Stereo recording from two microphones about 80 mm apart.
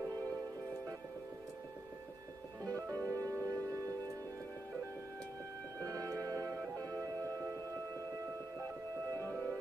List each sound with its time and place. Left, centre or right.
2.6 s music: right
5.8 s music: right